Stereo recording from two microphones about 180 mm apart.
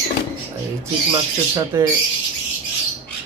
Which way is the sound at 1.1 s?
15° right (ahead or behind).